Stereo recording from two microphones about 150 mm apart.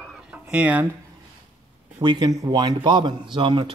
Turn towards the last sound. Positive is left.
turn(degrees=-35)  # may be behind; listen again after turning